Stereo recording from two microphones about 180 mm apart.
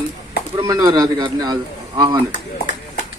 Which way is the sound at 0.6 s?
25° right (ahead or behind).